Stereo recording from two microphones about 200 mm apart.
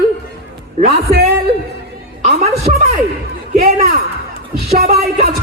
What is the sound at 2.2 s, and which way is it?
Music, 30° right (ahead or behind).